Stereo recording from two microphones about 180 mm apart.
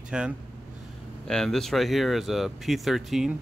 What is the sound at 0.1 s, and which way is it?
Speech, 5° right (ahead or behind).